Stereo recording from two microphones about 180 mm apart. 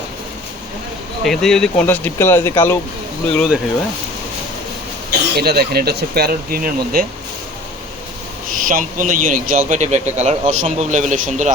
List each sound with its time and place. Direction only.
1.2 s speech: centre (ahead or behind)
3.3 s speech: centre (ahead or behind)
5.4 s speech: 60° right (ahead or behind)
8.4 s a man's voice: 50° right (ahead or behind)